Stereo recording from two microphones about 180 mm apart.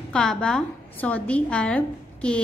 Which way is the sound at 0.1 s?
5° left (ahead or behind).